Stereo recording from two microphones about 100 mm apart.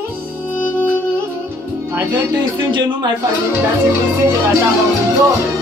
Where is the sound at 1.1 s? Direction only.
20° right (ahead or behind).